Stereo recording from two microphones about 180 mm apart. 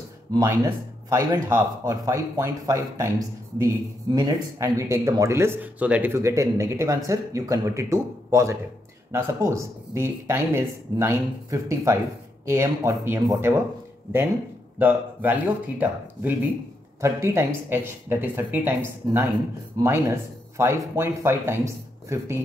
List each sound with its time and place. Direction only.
1.1 s speech: 15° right (ahead or behind)
14.8 s speech: 10° right (ahead or behind)
19.8 s speech: 15° right (ahead or behind)